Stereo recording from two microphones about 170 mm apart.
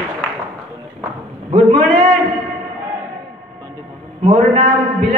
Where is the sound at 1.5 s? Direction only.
35° right (ahead or behind).